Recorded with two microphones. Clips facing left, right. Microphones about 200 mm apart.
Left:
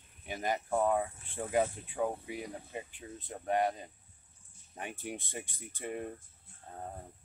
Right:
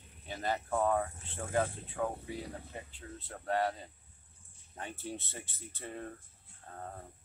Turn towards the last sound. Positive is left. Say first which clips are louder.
# left 4 dB
turn(degrees=15)  # may be behind; listen again after turning